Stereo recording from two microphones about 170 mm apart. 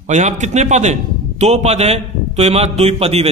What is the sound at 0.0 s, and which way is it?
A man's voice, 45° right (ahead or behind).